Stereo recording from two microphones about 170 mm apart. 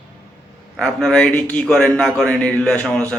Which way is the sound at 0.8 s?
5° left (ahead or behind).